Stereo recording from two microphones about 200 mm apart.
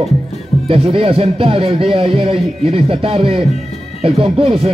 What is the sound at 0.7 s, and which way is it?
A man's voice, 30° right (ahead or behind).